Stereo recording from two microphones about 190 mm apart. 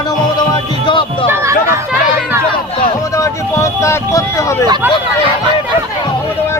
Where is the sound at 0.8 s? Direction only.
25° left (ahead or behind).